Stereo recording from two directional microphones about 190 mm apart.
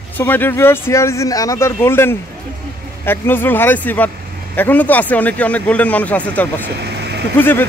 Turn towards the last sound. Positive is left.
turn(degrees=10)  # may be behind; listen again after turning